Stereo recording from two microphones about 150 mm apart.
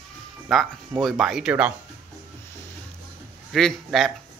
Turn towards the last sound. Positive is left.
turn(degrees=0)  # may be behind; listen again after turning